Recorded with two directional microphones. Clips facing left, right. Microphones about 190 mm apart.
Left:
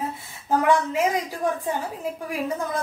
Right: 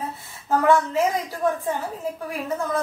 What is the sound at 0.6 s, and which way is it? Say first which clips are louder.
A woman's voice: right 2 dB; 15° left (ahead or behind).